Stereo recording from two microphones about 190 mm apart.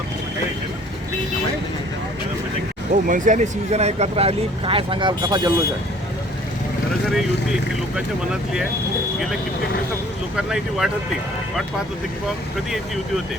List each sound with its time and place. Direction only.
3.1 s speech: 40° right (ahead or behind); by 5.5 s 20° right (ahead or behind)
7.1 s speech: 5° right (ahead or behind)
10.3 s speech: 5° right (ahead or behind)